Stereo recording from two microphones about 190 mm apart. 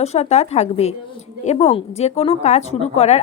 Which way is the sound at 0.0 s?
35° left (ahead or behind).